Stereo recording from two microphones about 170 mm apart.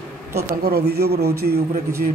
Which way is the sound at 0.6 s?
65° right (ahead or behind).